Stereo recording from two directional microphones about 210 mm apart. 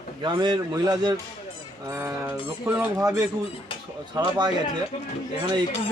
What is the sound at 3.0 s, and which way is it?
Speech, 15° right (ahead or behind).